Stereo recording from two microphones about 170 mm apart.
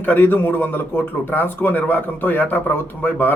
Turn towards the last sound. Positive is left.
turn(degrees=10)  # may be behind; listen again after turning